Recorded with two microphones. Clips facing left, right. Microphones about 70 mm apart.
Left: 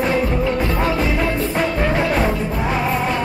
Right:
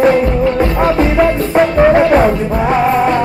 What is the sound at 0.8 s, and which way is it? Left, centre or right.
Music, right.